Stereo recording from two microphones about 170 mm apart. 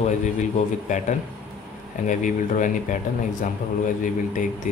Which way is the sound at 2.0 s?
50° left (ahead or behind).